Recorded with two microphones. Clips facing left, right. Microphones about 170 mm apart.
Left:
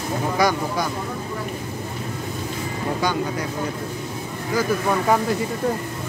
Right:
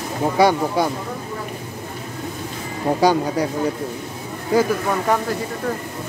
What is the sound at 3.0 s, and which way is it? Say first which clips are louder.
Speech: right 8 dB; 35° right (ahead or behind).